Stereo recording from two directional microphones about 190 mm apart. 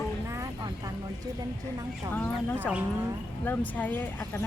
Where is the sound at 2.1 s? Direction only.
10° left (ahead or behind).